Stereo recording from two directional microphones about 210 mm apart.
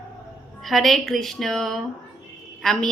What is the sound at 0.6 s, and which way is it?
A woman's voice, centre (ahead or behind).